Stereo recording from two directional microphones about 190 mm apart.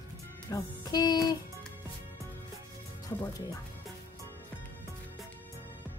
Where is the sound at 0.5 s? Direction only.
20° left (ahead or behind).